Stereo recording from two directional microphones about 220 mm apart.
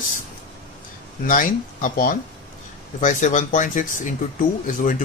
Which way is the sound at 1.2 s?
40° left (ahead or behind).